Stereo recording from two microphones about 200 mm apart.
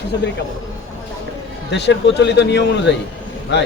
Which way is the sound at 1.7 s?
60° left (ahead or behind).